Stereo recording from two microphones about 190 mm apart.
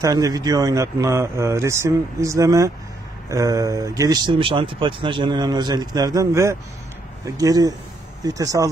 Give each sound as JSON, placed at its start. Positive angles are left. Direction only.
{"t": 0.0, "sound": "speech", "side_deg": -20}